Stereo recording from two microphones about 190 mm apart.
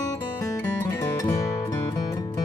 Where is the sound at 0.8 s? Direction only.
15° left (ahead or behind).